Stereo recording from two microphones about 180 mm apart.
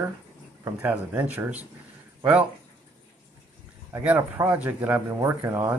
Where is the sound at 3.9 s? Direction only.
10° right (ahead or behind).